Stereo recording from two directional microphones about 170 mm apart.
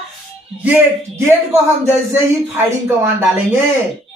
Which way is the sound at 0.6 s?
15° right (ahead or behind).